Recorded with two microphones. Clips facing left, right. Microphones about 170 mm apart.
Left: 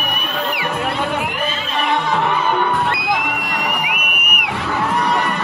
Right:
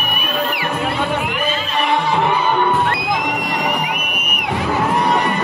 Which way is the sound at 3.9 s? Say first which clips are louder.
Right 1 dB; 30° right (ahead or behind).